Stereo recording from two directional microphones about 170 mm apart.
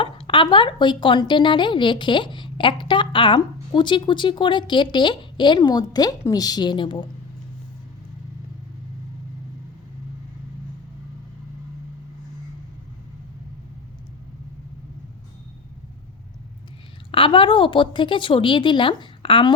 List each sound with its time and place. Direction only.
0.0 s speech: 30° left (ahead or behind)
17.1 s speech: 30° left (ahead or behind)